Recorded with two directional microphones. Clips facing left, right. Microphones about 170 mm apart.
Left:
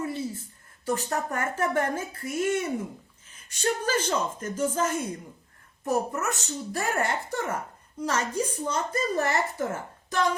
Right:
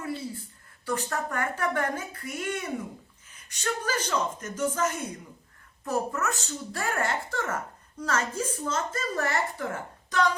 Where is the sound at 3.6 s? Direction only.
25° left (ahead or behind).